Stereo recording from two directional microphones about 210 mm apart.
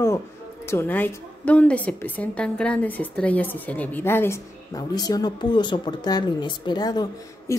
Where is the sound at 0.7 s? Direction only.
10° left (ahead or behind).